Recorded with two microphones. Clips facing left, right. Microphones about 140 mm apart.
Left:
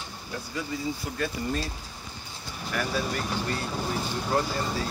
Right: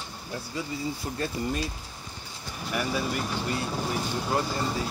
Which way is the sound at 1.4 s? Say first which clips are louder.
Right 1 dB; 25° right (ahead or behind).